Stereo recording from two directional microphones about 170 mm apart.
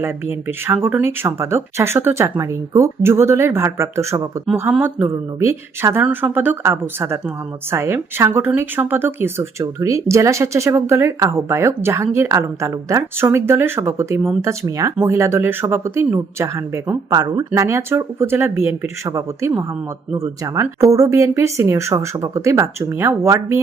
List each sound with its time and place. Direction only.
0.0 s a woman's voice: 15° right (ahead or behind)